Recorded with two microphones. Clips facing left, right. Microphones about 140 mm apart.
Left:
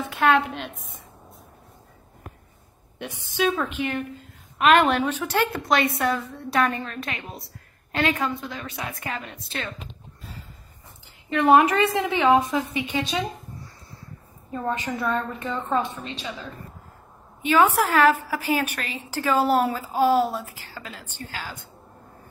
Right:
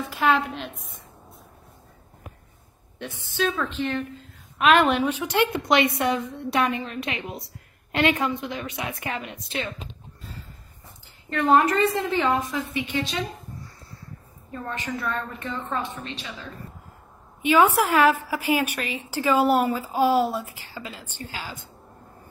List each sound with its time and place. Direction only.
0.1 s a woman's voice: centre (ahead or behind)
3.0 s speech: 15° left (ahead or behind)
4.9 s a woman's voice: 10° right (ahead or behind)
11.2 s speech: 10° left (ahead or behind)
14.5 s a woman's voice: 15° left (ahead or behind)
17.5 s speech: 10° right (ahead or behind)
20.4 s a woman's voice: 40° left (ahead or behind)
20.7 s speech: 10° right (ahead or behind)